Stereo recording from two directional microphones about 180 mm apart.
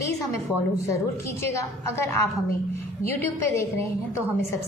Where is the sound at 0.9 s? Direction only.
15° left (ahead or behind).